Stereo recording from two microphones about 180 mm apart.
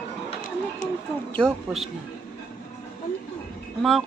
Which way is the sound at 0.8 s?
50° left (ahead or behind).